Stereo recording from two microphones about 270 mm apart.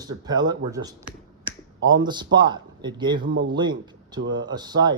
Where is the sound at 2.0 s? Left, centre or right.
Centre.